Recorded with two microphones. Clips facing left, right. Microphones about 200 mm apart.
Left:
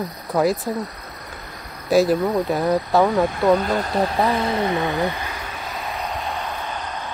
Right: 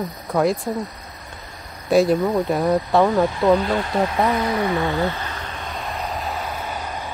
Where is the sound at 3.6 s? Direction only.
40° left (ahead or behind).